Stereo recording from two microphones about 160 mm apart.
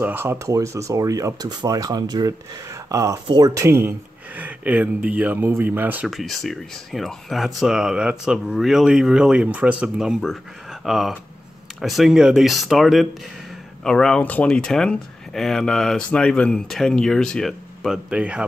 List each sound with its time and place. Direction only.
0.0 s speech: 15° right (ahead or behind)
6.0 s speech: centre (ahead or behind)